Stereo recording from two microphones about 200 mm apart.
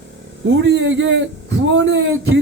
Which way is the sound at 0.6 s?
65° right (ahead or behind).